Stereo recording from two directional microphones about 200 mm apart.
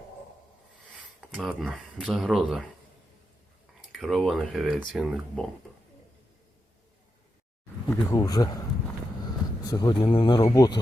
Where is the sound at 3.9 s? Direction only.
Centre (ahead or behind).